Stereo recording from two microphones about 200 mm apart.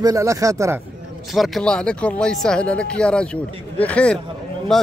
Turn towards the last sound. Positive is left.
turn(degrees=0)  # may be behind; listen again after turning